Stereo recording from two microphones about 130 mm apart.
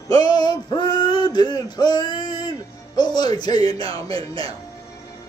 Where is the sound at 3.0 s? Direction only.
35° left (ahead or behind).